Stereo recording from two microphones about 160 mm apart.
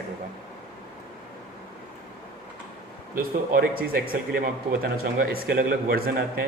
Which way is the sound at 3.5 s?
65° right (ahead or behind).